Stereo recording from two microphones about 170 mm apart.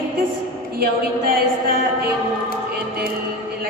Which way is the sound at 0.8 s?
60° right (ahead or behind).